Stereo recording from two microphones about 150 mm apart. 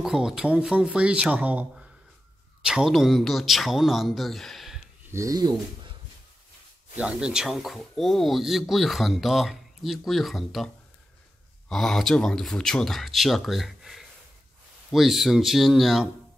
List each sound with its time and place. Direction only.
0.0 s speech: 5° right (ahead or behind)
5.1 s speech: 20° right (ahead or behind)
7.0 s speech: 5° right (ahead or behind)
11.7 s speech: centre (ahead or behind)